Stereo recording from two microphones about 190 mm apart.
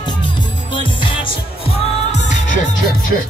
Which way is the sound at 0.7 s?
25° left (ahead or behind).